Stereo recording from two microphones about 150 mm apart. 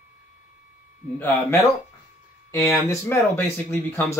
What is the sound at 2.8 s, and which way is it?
Speech, 15° left (ahead or behind).